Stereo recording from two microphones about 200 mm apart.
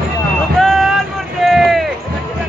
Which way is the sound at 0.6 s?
Centre (ahead or behind).